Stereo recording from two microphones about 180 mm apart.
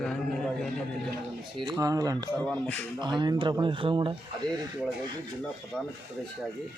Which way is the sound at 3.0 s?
25° right (ahead or behind).